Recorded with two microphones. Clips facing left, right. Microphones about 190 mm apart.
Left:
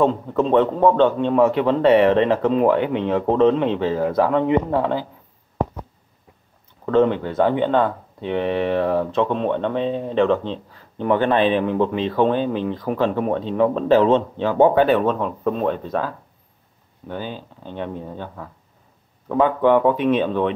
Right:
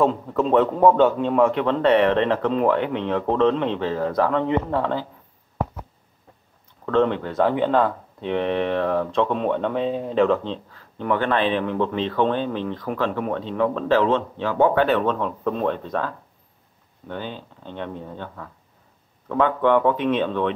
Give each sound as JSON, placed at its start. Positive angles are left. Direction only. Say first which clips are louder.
{"t": 0.0, "sound": "a man's voice", "louder": "left 2 dB", "side_deg": 0}
{"t": 6.9, "sound": "speech", "louder": "left 3 dB", "side_deg": 5}
{"t": 11.0, "sound": "a man's voice", "louder": "left 4 dB", "side_deg": 20}